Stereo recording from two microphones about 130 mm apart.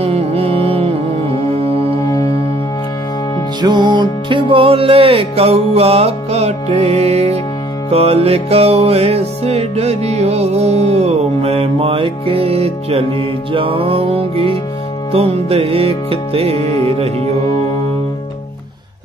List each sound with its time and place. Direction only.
0.0 s music: 50° right (ahead or behind)
3.6 s music: 35° right (ahead or behind); by 17.4 s 50° right (ahead or behind)